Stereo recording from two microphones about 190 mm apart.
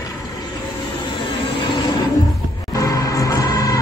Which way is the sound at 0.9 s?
25° left (ahead or behind).